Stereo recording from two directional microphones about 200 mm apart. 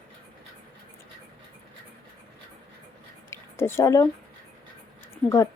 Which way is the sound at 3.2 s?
15° left (ahead or behind).